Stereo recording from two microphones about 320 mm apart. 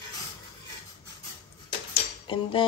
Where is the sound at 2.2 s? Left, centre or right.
Centre.